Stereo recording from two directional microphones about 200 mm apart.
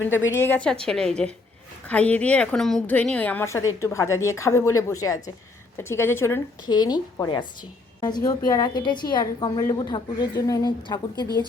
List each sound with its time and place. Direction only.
0.3 s a woman's voice: 10° left (ahead or behind)